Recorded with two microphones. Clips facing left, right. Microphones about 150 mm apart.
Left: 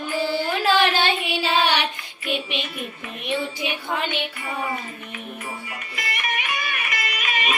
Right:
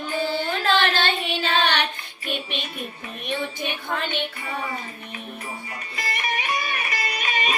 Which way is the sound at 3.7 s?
10° left (ahead or behind).